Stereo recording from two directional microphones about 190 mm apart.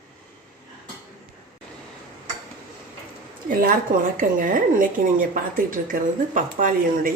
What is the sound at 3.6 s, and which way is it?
Speech, 45° right (ahead or behind).